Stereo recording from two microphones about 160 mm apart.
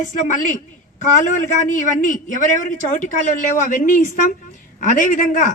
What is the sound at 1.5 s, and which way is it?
A man's voice, 50° left (ahead or behind).